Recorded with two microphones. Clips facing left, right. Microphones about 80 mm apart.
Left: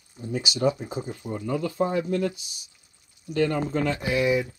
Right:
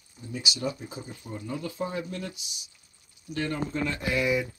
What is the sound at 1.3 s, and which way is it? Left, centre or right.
Speech, left.